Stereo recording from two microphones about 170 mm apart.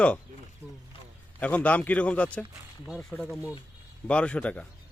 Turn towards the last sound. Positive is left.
turn(degrees=5)  # may be behind; listen again after turning